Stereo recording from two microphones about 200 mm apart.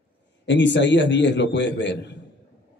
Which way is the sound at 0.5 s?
60° left (ahead or behind).